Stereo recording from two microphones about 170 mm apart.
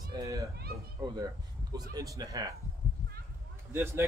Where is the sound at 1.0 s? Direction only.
25° right (ahead or behind).